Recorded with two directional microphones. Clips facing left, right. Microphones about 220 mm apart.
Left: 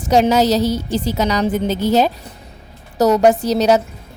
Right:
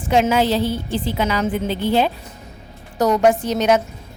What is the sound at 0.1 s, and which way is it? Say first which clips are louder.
Speech: left 3 dB; 40° left (ahead or behind).